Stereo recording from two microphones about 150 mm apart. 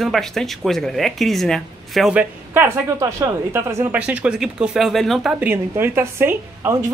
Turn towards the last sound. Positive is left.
turn(degrees=-15)  # may be behind; listen again after turning